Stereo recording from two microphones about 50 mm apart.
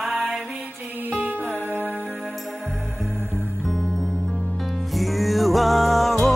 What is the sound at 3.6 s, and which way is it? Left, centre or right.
Music, centre.